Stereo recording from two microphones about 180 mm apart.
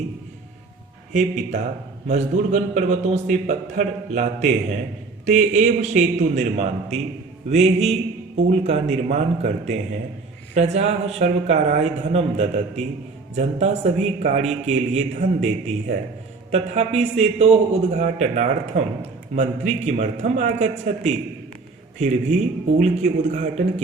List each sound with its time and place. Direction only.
1.1 s a man's voice: 45° right (ahead or behind)